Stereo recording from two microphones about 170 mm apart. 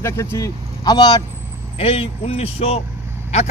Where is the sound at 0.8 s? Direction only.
25° left (ahead or behind).